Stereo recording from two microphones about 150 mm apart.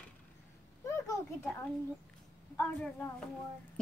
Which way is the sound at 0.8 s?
20° left (ahead or behind).